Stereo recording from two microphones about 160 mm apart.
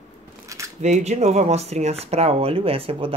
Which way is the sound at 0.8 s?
45° right (ahead or behind).